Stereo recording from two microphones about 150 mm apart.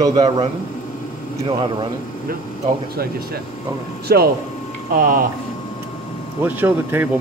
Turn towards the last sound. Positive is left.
turn(degrees=-15)  # may be behind; listen again after turning